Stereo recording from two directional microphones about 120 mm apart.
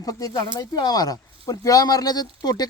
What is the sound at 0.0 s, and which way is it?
Speech, 30° left (ahead or behind).